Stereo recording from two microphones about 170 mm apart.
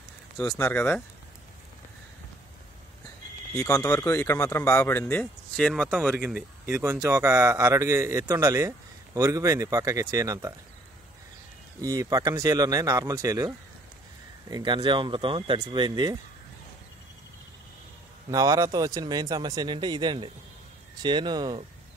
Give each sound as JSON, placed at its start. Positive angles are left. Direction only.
{"t": 0.7, "sound": "speech", "side_deg": 5}
{"t": 3.6, "sound": "speech", "side_deg": 20}
{"t": 6.1, "sound": "speech", "side_deg": -10}
{"t": 11.8, "sound": "speech", "side_deg": -20}
{"t": 14.5, "sound": "speech", "side_deg": -25}
{"t": 18.3, "sound": "speech", "side_deg": -20}